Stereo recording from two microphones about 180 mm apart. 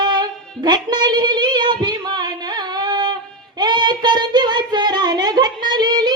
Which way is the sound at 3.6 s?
25° right (ahead or behind).